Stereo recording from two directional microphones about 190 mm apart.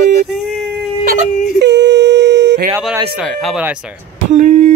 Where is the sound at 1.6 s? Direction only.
65° right (ahead or behind).